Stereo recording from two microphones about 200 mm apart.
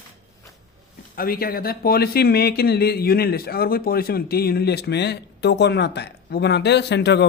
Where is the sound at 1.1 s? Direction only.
50° left (ahead or behind).